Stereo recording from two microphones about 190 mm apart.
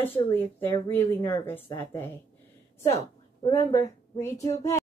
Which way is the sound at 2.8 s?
35° left (ahead or behind).